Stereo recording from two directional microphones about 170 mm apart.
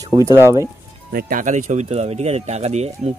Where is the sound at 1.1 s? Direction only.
50° right (ahead or behind).